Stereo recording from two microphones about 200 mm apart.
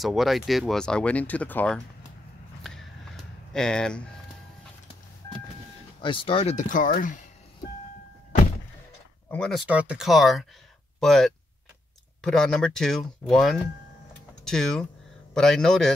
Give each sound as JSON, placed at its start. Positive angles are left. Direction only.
{"t": 0.0, "sound": "speech", "side_deg": 0}
{"t": 2.6, "sound": "a sound", "side_deg": 0}
{"t": 3.5, "sound": "speech", "side_deg": 5}
{"t": 5.9, "sound": "speech", "side_deg": 25}
{"t": 9.3, "sound": "speech", "side_deg": 0}